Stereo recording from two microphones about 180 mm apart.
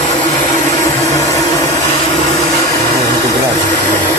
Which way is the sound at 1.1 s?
20° left (ahead or behind).